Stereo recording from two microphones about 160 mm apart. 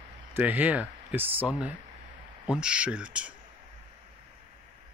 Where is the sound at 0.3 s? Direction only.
10° right (ahead or behind).